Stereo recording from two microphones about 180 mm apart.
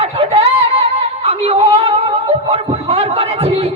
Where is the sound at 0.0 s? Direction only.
35° right (ahead or behind).